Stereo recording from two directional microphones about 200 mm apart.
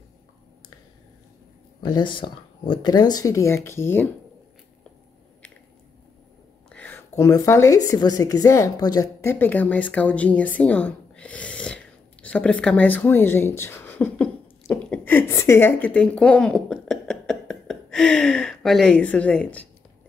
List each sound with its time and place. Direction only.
1.8 s speech: 20° left (ahead or behind)
6.7 s a woman's voice: 10° left (ahead or behind)